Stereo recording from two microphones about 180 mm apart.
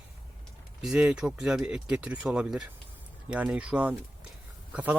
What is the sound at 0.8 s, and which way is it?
Speech, 5° right (ahead or behind).